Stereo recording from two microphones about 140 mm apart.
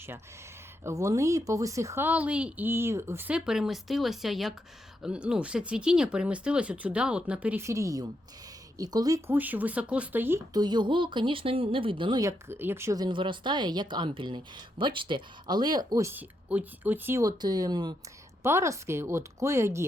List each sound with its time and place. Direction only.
0.9 s speech: 20° right (ahead or behind)
10.5 s speech: 30° right (ahead or behind)
12.2 s speech: 15° right (ahead or behind)
18.4 s speech: 20° right (ahead or behind)